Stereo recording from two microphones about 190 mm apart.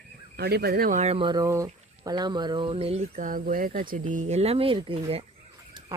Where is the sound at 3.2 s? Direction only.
45° right (ahead or behind); by 5.2 s 30° right (ahead or behind).